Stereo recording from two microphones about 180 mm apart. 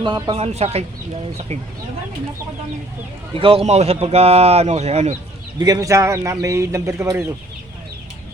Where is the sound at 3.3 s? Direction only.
30° right (ahead or behind).